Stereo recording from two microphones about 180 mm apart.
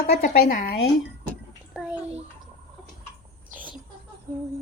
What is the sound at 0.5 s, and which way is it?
Speech, 45° left (ahead or behind).